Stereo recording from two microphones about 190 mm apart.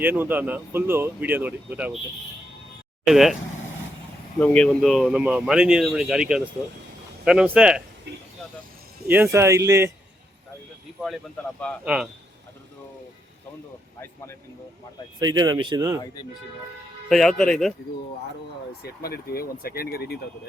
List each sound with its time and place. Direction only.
0.0 s speech: 10° right (ahead or behind)
3.1 s speech: centre (ahead or behind)
4.4 s speech: 5° left (ahead or behind)
9.0 s speech: 10° right (ahead or behind)
15.2 s speech: 20° right (ahead or behind)
17.1 s speech: centre (ahead or behind)
18.8 s speech: 55° left (ahead or behind)